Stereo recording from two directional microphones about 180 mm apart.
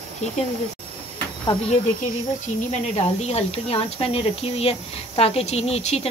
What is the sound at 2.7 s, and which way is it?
Speech, 40° left (ahead or behind).